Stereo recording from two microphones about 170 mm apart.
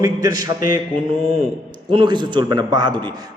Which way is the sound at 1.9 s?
25° right (ahead or behind).